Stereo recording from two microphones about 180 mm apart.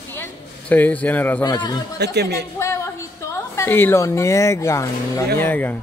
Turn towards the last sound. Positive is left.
turn(degrees=10)  # may be behind; listen again after turning